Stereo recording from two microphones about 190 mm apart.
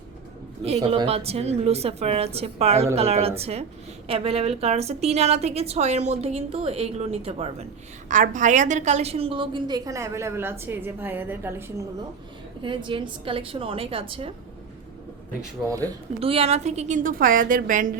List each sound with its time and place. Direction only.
0.9 s a woman's voice: 30° right (ahead or behind); by 11.6 s 10° right (ahead or behind)
12.6 s a woman's voice: 25° right (ahead or behind)
16.2 s a woman's voice: 30° right (ahead or behind)